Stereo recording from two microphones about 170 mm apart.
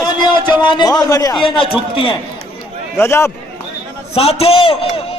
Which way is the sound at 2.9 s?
15° left (ahead or behind).